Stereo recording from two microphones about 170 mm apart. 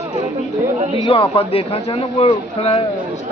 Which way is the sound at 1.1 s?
35° left (ahead or behind).